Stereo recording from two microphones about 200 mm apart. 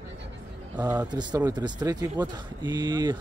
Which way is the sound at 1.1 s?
20° right (ahead or behind).